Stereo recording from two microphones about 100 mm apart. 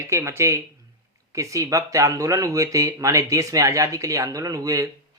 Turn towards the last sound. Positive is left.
turn(degrees=-35)  # may be behind; listen again after turning